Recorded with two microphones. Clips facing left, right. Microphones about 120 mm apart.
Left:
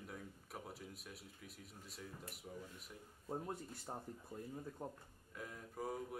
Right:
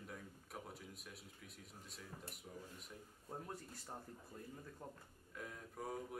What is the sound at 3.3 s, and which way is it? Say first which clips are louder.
Speech: left 5 dB; 25° left (ahead or behind).